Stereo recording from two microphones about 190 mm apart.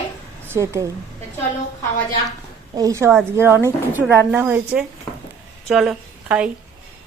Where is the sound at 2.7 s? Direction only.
15° right (ahead or behind).